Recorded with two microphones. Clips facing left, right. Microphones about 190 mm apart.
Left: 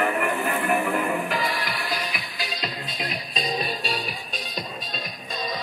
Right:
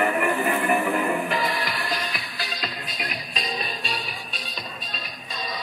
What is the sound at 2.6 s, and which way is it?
Music, 30° left (ahead or behind).